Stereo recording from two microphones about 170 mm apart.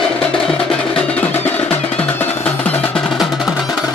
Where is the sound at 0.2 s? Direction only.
5° left (ahead or behind).